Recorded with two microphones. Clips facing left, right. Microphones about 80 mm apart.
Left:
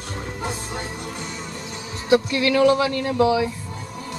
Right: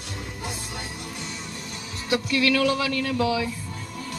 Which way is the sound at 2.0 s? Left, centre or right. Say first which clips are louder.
Left 5 dB; left.